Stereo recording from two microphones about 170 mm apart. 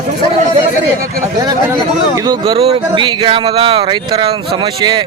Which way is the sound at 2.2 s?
25° right (ahead or behind).